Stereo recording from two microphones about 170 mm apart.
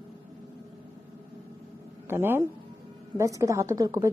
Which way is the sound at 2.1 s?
15° right (ahead or behind).